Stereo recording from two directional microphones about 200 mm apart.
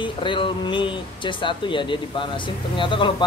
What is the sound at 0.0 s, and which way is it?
Speech, 25° left (ahead or behind).